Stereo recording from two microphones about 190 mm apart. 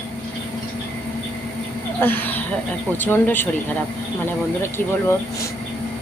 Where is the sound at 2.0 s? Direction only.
10° left (ahead or behind).